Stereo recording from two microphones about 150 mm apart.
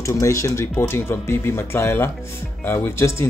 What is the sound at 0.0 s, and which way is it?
Speech, 20° left (ahead or behind).